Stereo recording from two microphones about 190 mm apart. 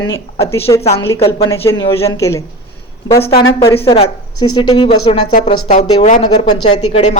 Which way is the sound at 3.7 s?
30° left (ahead or behind).